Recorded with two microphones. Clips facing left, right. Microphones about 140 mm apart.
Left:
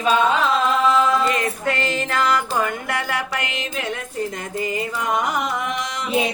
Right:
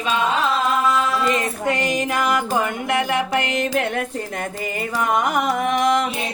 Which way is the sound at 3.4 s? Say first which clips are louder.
Right 7 dB; 45° right (ahead or behind).